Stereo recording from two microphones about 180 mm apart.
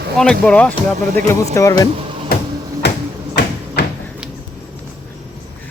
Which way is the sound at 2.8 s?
70° left (ahead or behind).